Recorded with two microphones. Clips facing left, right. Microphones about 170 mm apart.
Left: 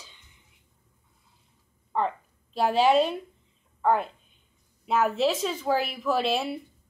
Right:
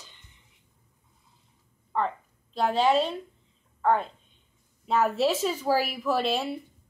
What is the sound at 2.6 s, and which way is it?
A woman's voice, 10° left (ahead or behind).